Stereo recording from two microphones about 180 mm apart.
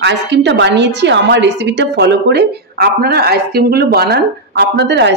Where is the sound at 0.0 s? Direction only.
75° right (ahead or behind).